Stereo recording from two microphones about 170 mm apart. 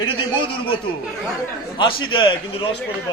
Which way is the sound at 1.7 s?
30° left (ahead or behind).